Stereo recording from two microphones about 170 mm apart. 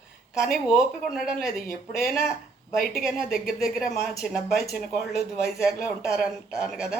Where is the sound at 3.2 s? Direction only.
Centre (ahead or behind).